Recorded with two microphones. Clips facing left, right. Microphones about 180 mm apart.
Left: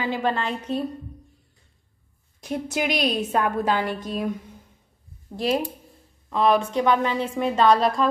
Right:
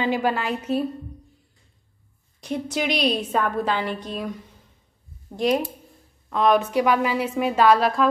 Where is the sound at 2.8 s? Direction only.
50° left (ahead or behind).